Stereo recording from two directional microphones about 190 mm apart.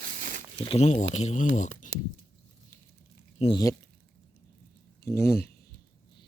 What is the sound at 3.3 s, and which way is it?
Speech, 30° left (ahead or behind).